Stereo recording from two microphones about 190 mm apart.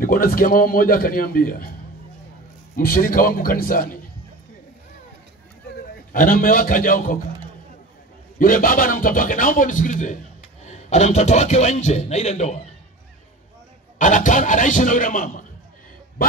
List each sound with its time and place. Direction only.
0.0 s speech: 50° left (ahead or behind)
2.7 s speech: 50° left (ahead or behind)
6.1 s speech: 50° left (ahead or behind)
8.4 s a man's voice: 50° left (ahead or behind)
13.9 s speech: 40° left (ahead or behind)